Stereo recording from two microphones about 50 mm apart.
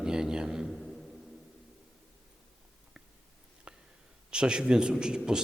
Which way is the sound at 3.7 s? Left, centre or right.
Right.